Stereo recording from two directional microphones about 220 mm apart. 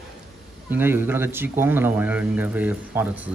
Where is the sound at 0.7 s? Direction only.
10° right (ahead or behind).